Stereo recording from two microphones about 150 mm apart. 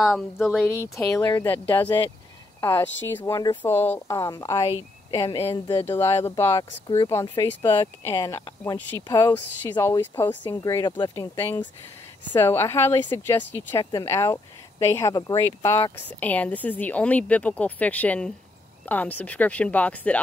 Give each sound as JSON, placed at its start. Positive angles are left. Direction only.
{"t": 0.0, "sound": "speech", "side_deg": -5}
{"t": 0.7, "sound": "speech", "side_deg": 20}
{"t": 5.2, "sound": "speech", "side_deg": 35}
{"t": 5.9, "sound": "speech", "side_deg": 15}
{"t": 8.7, "sound": "speech", "side_deg": 20}
{"t": 11.1, "sound": "speech", "side_deg": 15}